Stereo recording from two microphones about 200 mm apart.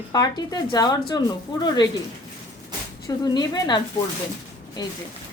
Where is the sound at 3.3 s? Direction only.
20° left (ahead or behind).